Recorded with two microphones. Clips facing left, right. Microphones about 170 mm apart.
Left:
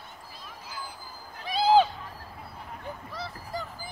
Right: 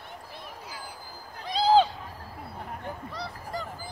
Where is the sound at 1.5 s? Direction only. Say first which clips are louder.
Even; 10° left (ahead or behind).